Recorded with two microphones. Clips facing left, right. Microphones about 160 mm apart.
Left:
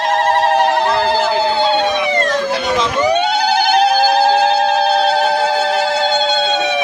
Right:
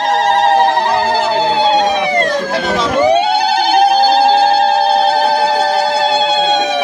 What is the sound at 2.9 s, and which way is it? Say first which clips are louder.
Siren: right 6 dB; 30° right (ahead or behind).